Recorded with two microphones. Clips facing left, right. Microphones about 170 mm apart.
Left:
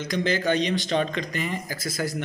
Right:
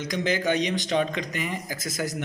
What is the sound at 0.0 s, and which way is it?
Speech, 15° right (ahead or behind).